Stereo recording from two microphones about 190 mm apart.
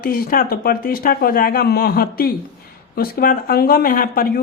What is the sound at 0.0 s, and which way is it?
Speech, 50° left (ahead or behind).